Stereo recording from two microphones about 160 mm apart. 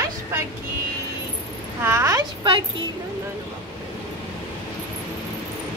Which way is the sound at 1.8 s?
15° right (ahead or behind).